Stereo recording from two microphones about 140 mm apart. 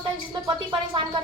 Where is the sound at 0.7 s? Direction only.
35° right (ahead or behind).